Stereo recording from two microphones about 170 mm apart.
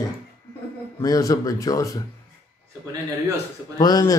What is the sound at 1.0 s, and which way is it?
Speech, 20° left (ahead or behind).